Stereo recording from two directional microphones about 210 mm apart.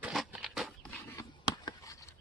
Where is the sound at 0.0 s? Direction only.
5° right (ahead or behind).